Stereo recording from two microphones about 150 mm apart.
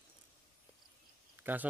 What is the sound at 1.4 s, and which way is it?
Speech, 10° right (ahead or behind).